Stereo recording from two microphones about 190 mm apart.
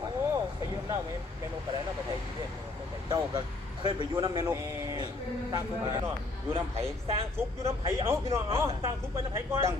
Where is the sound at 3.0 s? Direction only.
20° right (ahead or behind).